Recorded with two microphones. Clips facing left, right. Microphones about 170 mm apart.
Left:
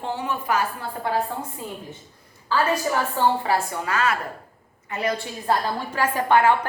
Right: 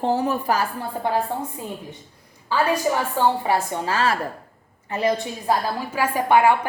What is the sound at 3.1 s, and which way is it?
A woman's voice, 20° right (ahead or behind).